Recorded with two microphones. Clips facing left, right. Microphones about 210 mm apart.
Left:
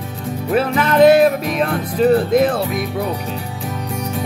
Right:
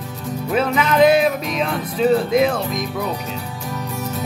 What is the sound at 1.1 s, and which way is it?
Music, 55° left (ahead or behind).